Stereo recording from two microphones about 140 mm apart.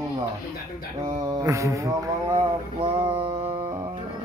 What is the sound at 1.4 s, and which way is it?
Mantra, 20° right (ahead or behind).